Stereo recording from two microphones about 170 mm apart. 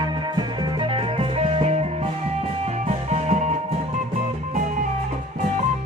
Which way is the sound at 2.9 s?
40° right (ahead or behind).